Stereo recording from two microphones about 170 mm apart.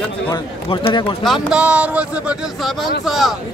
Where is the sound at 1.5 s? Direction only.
5° right (ahead or behind).